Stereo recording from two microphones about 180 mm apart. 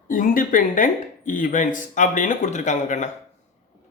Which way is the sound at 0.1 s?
50° left (ahead or behind).